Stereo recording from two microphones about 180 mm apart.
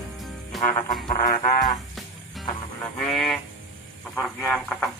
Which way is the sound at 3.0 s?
Centre (ahead or behind).